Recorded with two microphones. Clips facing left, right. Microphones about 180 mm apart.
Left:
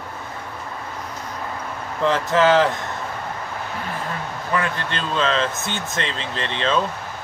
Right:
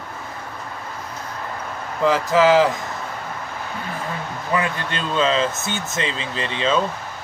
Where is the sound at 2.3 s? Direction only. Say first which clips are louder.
Right 1 dB; 5° right (ahead or behind).